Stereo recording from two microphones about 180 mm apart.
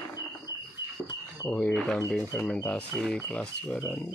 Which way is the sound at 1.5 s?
5° left (ahead or behind).